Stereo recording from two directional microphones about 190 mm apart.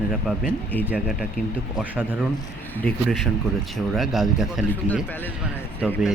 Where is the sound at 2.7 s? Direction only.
10° left (ahead or behind).